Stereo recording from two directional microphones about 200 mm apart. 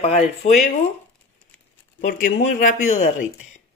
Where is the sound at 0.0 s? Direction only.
30° left (ahead or behind).